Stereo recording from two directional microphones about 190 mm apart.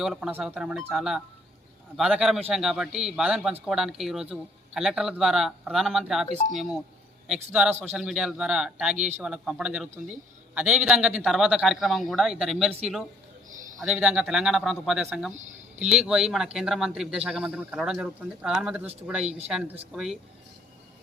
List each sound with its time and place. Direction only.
0.0 s speech: centre (ahead or behind)
15.3 s a sound: 40° right (ahead or behind)
15.8 s speech: 5° right (ahead or behind)